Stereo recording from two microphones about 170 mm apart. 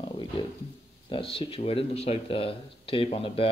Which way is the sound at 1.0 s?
30° left (ahead or behind).